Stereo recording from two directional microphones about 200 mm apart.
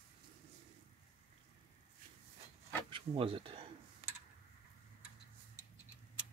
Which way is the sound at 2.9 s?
25° right (ahead or behind).